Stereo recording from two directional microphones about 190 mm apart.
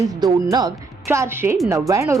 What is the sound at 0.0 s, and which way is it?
A woman's voice, 20° right (ahead or behind).